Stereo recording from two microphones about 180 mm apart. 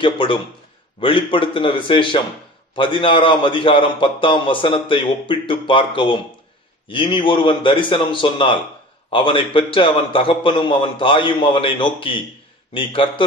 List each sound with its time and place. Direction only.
0.0 s a man's voice: 30° left (ahead or behind)